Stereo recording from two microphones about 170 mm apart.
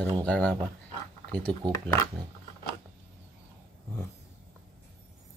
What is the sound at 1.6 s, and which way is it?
Speech, 25° right (ahead or behind).